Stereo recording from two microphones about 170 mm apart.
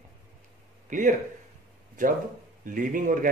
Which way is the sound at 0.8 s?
50° right (ahead or behind).